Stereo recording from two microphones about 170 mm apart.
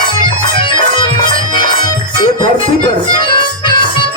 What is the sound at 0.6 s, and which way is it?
Music, 30° left (ahead or behind).